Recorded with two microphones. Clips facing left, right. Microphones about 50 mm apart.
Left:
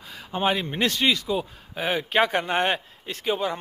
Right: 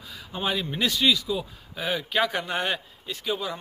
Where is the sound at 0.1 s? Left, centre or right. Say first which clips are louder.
Left 4 dB; left.